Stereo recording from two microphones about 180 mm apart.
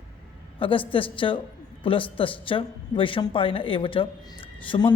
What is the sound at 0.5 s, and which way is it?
A woman's voice, 30° left (ahead or behind).